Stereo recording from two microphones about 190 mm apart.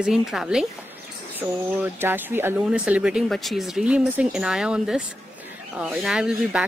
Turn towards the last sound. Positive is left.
turn(degrees=-5)  # may be behind; listen again after turning